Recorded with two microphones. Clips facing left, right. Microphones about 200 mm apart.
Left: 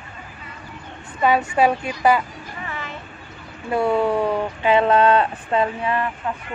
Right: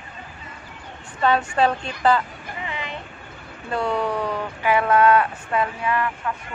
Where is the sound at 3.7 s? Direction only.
20° left (ahead or behind).